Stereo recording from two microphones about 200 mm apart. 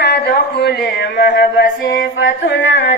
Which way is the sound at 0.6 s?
55° left (ahead or behind).